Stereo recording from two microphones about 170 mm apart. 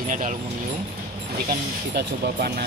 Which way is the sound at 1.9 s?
70° right (ahead or behind).